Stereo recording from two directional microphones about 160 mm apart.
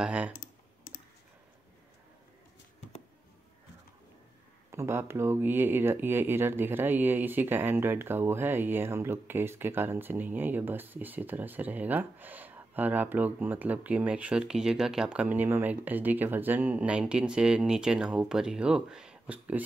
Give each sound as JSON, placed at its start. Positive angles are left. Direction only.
{"t": 0.0, "sound": "speech", "side_deg": -5}
{"t": 0.3, "sound": "typing", "side_deg": 55}
{"t": 4.6, "sound": "speech", "side_deg": -15}